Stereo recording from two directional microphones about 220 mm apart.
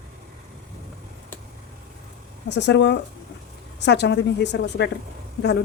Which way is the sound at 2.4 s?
50° left (ahead or behind).